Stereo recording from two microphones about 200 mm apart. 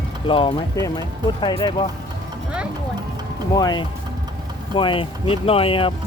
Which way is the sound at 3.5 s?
20° left (ahead or behind).